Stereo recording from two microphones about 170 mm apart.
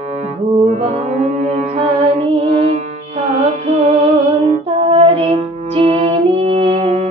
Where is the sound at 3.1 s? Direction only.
40° right (ahead or behind).